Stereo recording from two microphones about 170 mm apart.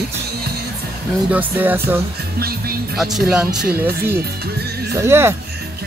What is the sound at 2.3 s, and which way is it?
Music, 65° right (ahead or behind).